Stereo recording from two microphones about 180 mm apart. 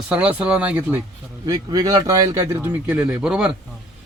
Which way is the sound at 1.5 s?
20° right (ahead or behind).